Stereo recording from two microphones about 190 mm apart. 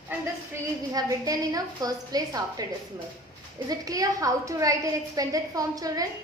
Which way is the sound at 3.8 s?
20° right (ahead or behind).